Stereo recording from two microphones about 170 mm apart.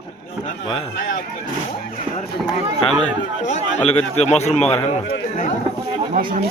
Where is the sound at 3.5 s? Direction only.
40° left (ahead or behind).